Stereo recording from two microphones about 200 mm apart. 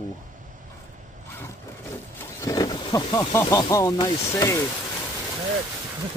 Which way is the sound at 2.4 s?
20° left (ahead or behind).